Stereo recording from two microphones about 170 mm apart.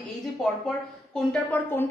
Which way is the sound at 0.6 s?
5° left (ahead or behind).